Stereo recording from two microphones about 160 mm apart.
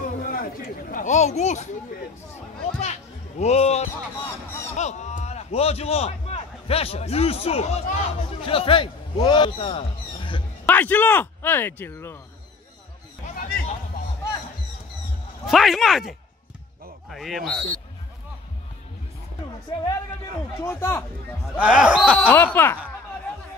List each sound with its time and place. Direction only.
0.0 s a sound: 60° left (ahead or behind)
2.8 s music: 45° left (ahead or behind)
4.7 s a man's voice: 45° left (ahead or behind)
10.6 s speech: 10° left (ahead or behind)
13.3 s speech: 55° left (ahead or behind)
15.4 s speech: centre (ahead or behind)
20.6 s speech: 15° left (ahead or behind)
21.5 s speech: 5° right (ahead or behind)
22.3 s speech: 10° left (ahead or behind)